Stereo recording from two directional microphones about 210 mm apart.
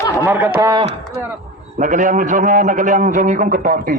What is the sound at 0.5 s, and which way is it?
Chop, 15° right (ahead or behind).